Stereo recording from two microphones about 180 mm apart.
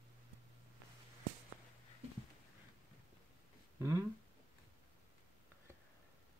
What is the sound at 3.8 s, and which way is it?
Speech, 15° right (ahead or behind).